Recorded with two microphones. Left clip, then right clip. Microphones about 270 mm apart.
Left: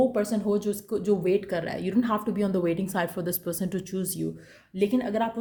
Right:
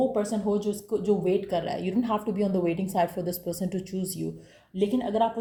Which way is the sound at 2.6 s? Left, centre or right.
Left.